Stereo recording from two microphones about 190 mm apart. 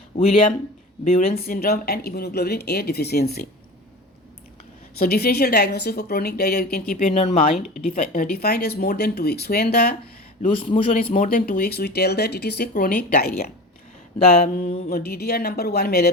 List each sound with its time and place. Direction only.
1.0 s speech: 35° left (ahead or behind)
1.3 s a woman's voice: 50° left (ahead or behind)
4.9 s a woman's voice: 55° left (ahead or behind)
10.5 s a man's voice: 30° left (ahead or behind)
11.0 s a woman's voice: 40° left (ahead or behind)
14.3 s a sound: 45° left (ahead or behind)
14.8 s a woman's voice: 55° left (ahead or behind)